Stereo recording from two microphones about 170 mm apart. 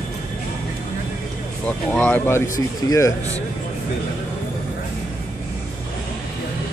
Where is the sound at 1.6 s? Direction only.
5° left (ahead or behind).